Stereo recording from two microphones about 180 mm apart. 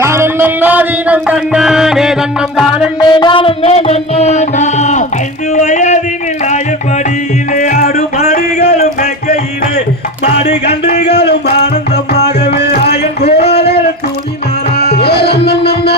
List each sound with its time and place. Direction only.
0.0 s music: 15° right (ahead or behind)
3.0 s music: 25° left (ahead or behind); by 6.0 s 45° left (ahead or behind)
7.5 s music: 45° left (ahead or behind)
10.2 s music: 40° left (ahead or behind)
11.0 s a sound: 65° left (ahead or behind)
12.1 s music: 65° left (ahead or behind)